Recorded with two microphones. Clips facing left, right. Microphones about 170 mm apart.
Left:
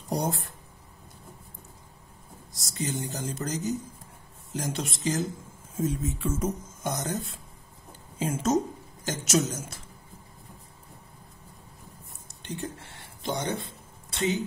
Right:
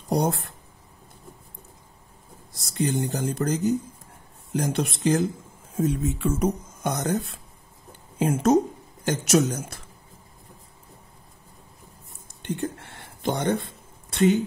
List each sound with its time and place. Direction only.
0.1 s speech: 65° right (ahead or behind)
2.5 s speech: 60° right (ahead or behind)
8.2 s speech: 60° right (ahead or behind)
12.4 s speech: 55° right (ahead or behind)